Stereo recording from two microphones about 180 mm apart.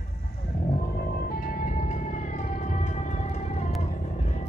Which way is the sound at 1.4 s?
50° left (ahead or behind).